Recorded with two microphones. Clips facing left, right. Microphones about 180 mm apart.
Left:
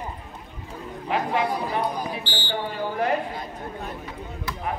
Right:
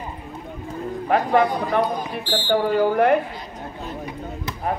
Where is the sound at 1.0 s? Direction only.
55° right (ahead or behind).